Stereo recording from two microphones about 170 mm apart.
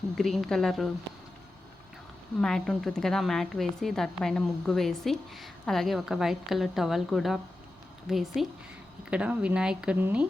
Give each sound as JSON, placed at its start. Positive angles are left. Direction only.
{"t": 0.2, "sound": "a woman's voice", "side_deg": 0}
{"t": 2.4, "sound": "a woman's voice", "side_deg": 5}